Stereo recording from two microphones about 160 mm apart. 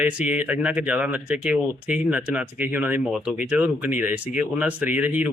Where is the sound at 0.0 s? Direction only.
10° right (ahead or behind).